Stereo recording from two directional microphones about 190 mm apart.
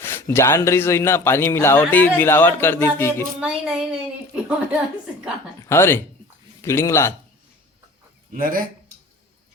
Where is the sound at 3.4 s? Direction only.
5° right (ahead or behind).